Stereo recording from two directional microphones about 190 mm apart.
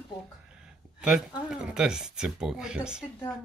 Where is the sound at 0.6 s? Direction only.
5° right (ahead or behind).